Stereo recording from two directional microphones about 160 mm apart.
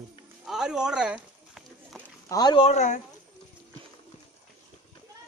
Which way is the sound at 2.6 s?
45° left (ahead or behind).